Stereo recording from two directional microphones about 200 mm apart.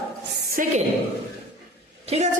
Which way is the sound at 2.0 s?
30° right (ahead or behind).